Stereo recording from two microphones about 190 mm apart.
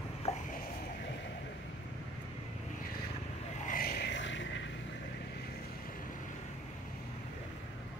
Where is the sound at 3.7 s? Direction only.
50° left (ahead or behind); by 4.7 s 75° left (ahead or behind).